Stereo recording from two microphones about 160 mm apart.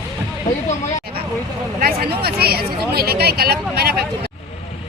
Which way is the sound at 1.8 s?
75° right (ahead or behind).